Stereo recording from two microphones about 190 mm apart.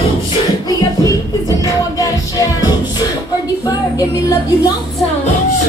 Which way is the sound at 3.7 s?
20° left (ahead or behind).